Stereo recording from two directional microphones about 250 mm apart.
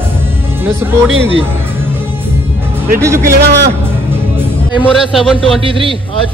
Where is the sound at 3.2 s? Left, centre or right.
Right.